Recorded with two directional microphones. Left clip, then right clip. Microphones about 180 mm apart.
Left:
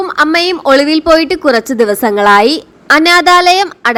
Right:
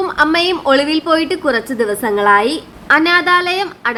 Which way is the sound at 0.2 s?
30° left (ahead or behind).